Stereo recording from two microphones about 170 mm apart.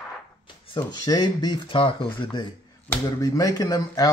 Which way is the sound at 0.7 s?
25° left (ahead or behind).